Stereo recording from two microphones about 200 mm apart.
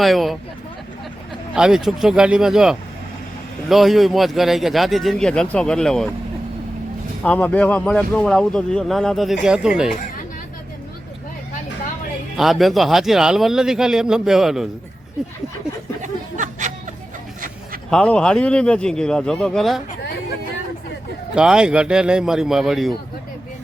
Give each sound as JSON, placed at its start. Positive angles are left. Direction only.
{"t": 0.0, "sound": "speech", "side_deg": 0}
{"t": 1.5, "sound": "speech", "side_deg": -5}
{"t": 7.2, "sound": "speech", "side_deg": 5}
{"t": 12.4, "sound": "speech", "side_deg": 0}
{"t": 16.0, "sound": "snicker", "side_deg": -40}
{"t": 17.9, "sound": "speech", "side_deg": 5}
{"t": 21.3, "sound": "speech", "side_deg": -5}